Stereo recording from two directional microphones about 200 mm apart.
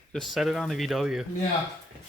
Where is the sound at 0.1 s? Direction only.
Centre (ahead or behind).